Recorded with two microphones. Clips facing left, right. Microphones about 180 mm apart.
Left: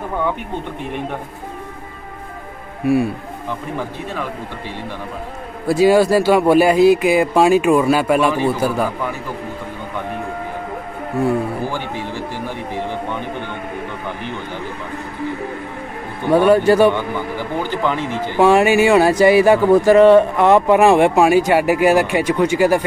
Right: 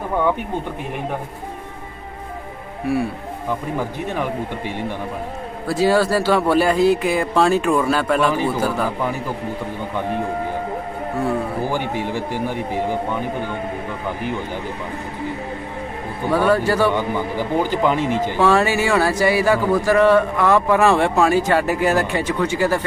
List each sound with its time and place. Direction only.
3.7 s speech: 15° right (ahead or behind)
5.7 s speech: 15° left (ahead or behind)
11.7 s speech: 15° right (ahead or behind)
16.3 s a man's voice: 20° left (ahead or behind)
16.9 s speech: 15° right (ahead or behind)
18.4 s speech: 15° left (ahead or behind)